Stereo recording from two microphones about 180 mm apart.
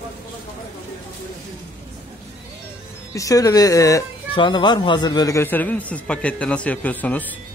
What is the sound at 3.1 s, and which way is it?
Speech, 20° left (ahead or behind).